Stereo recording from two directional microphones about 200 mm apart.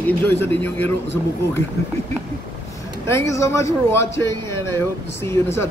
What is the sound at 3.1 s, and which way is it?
A man's voice, 15° left (ahead or behind).